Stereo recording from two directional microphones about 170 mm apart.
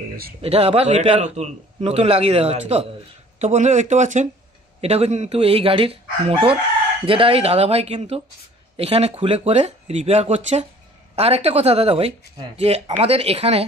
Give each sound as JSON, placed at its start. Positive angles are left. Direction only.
{"t": 0.4, "sound": "a man's voice", "side_deg": -35}